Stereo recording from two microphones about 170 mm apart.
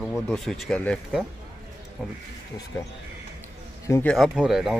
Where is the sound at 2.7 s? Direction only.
10° left (ahead or behind).